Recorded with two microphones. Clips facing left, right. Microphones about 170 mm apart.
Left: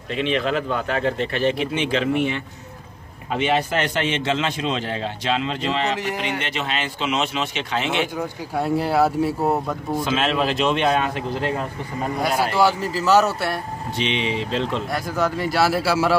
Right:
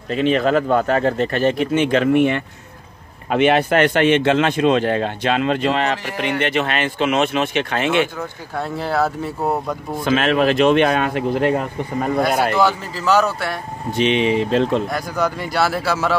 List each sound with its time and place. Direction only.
0.1 s a man's voice: 40° right (ahead or behind)
8.2 s speech: 10° left (ahead or behind)
10.0 s a man's voice: 60° right (ahead or behind)
12.5 s a man's voice: 5° left (ahead or behind)
13.9 s speech: 50° right (ahead or behind)
14.9 s a man's voice: centre (ahead or behind)